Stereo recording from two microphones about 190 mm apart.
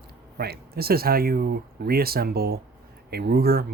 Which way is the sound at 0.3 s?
55° right (ahead or behind).